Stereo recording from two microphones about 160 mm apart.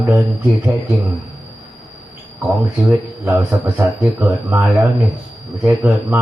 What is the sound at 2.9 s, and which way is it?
A man's voice, 15° right (ahead or behind).